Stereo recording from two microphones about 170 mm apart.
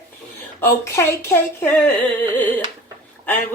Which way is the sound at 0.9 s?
15° left (ahead or behind).